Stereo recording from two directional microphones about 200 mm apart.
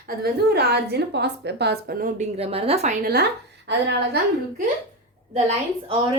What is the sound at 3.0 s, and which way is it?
Speech, 50° right (ahead or behind).